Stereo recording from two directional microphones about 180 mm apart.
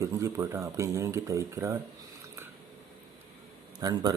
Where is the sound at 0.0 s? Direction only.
20° right (ahead or behind).